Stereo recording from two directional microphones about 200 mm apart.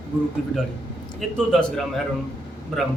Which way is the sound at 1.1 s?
5° left (ahead or behind).